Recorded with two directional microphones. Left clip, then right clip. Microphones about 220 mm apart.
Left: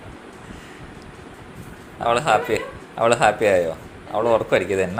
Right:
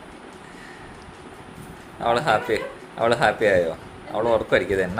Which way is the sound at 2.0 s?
5° right (ahead or behind).